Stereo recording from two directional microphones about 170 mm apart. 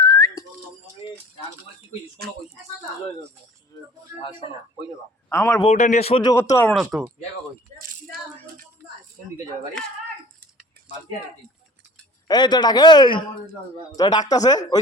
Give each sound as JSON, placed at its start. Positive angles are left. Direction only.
{"t": 0.1, "sound": "whistling", "side_deg": 15}
{"t": 5.3, "sound": "a man's voice", "side_deg": 15}
{"t": 5.6, "sound": "speech", "side_deg": 45}
{"t": 6.2, "sound": "speech", "side_deg": 20}
{"t": 6.9, "sound": "speech", "side_deg": -5}
{"t": 12.3, "sound": "speech", "side_deg": 25}